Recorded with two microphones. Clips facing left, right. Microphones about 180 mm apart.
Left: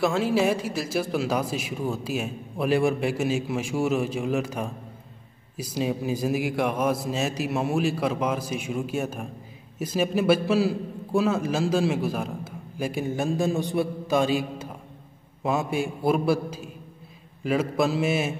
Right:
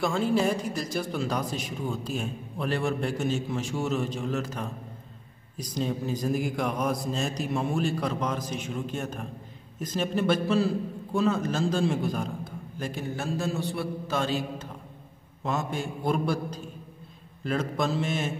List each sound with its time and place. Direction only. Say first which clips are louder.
0.0 s a man's voice: left 3 dB; centre (ahead or behind)